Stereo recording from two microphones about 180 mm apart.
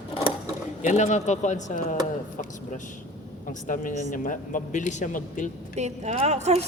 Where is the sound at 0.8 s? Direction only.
40° left (ahead or behind).